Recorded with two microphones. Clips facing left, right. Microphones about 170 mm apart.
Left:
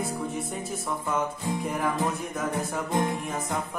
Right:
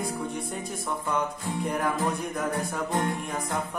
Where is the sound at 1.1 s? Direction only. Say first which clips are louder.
Left 1 dB; 5° left (ahead or behind).